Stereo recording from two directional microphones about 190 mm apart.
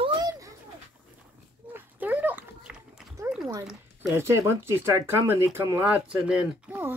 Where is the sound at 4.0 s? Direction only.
15° right (ahead or behind).